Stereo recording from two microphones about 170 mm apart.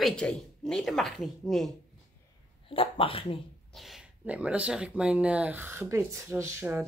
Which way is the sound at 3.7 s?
Centre (ahead or behind).